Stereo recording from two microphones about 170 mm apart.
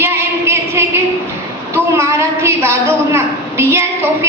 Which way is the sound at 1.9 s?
15° right (ahead or behind).